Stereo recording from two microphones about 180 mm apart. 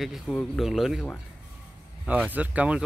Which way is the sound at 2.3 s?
10° right (ahead or behind).